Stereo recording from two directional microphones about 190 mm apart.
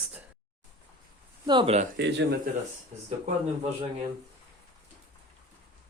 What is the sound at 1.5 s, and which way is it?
Speech, 30° right (ahead or behind).